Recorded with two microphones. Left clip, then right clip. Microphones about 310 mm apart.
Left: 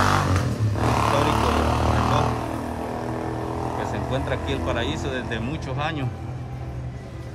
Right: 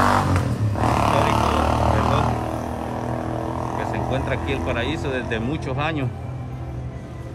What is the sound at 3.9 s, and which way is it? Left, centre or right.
Speech, centre.